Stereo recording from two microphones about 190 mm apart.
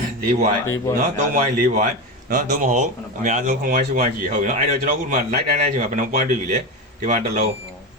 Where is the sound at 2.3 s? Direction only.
45° right (ahead or behind).